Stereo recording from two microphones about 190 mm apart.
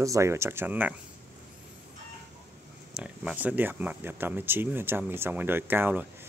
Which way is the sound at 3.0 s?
5° right (ahead or behind).